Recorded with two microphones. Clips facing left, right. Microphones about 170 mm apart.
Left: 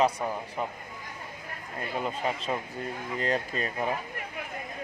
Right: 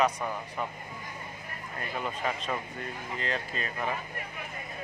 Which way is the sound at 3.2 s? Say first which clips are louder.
Left 5 dB; 40° left (ahead or behind).